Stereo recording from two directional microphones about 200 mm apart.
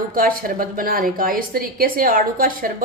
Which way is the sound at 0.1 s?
45° right (ahead or behind).